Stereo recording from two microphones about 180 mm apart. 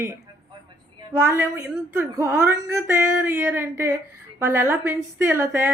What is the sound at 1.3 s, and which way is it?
A woman's voice, 15° right (ahead or behind).